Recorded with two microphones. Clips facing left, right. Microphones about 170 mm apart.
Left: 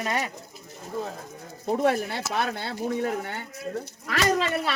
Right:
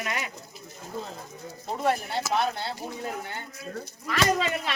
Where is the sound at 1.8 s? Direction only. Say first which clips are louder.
Even; 60° left (ahead or behind).